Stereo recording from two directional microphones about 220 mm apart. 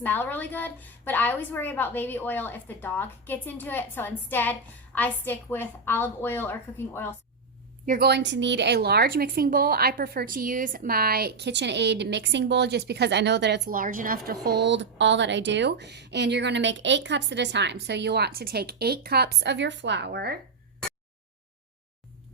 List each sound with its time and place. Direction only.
0.0 s a woman's voice: 10° left (ahead or behind)
7.9 s a woman's voice: 45° right (ahead or behind)
14.4 s a woman's voice: 50° right (ahead or behind)